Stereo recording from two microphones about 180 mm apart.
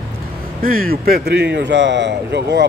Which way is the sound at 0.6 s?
50° right (ahead or behind).